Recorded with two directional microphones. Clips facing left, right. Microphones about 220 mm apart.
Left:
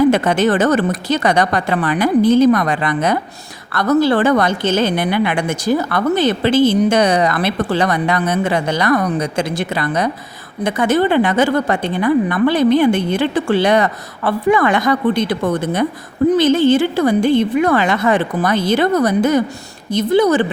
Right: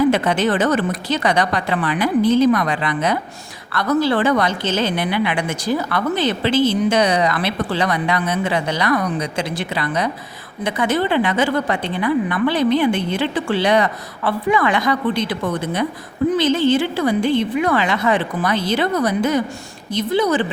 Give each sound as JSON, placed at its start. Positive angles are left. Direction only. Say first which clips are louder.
{"t": 0.1, "sound": "a woman's voice", "louder": "left 3 dB", "side_deg": 45}